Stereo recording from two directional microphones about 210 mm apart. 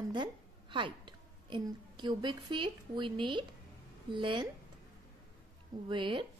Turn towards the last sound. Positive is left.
turn(degrees=-25)  # may be behind; listen again after turning